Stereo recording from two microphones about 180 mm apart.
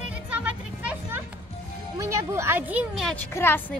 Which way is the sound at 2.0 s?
15° right (ahead or behind).